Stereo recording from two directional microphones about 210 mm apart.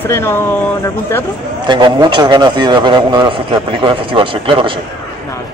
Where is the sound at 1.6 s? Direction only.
20° right (ahead or behind).